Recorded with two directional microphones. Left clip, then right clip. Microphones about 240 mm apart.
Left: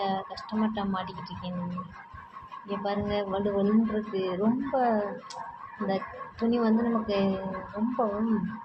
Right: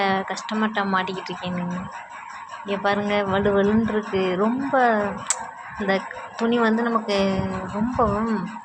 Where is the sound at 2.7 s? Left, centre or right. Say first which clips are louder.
Right 8 dB; centre.